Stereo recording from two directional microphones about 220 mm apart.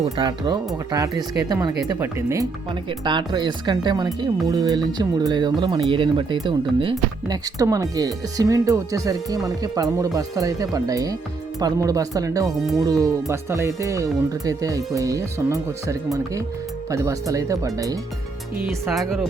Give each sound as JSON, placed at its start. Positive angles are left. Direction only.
{"t": 0.2, "sound": "speech", "side_deg": -20}
{"t": 18.6, "sound": "speech", "side_deg": 0}